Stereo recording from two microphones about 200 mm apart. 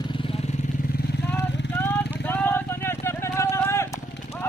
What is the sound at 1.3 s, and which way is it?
Vehicle, 10° left (ahead or behind).